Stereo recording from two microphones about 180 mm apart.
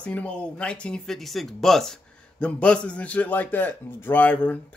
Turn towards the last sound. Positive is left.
turn(degrees=10)  # may be behind; listen again after turning